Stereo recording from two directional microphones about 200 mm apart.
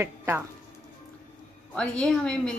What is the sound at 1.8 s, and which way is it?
Speech, 5° left (ahead or behind).